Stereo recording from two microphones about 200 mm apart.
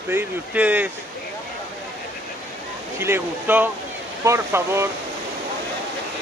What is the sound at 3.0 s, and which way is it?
Speech, 10° right (ahead or behind).